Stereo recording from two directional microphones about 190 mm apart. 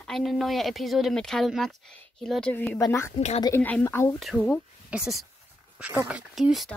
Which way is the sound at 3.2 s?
35° left (ahead or behind).